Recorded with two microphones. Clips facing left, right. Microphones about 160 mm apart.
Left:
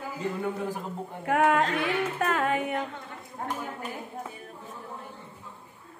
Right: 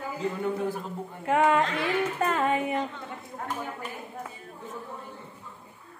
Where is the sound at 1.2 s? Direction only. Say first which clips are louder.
Right 1 dB; 5° left (ahead or behind).